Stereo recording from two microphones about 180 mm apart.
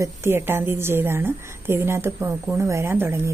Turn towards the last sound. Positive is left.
turn(degrees=-10)  # may be behind; listen again after turning